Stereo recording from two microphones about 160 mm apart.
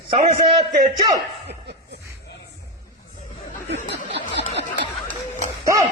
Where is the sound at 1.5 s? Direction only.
90° right.